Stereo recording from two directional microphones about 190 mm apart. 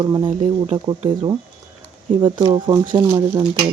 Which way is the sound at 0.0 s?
20° right (ahead or behind).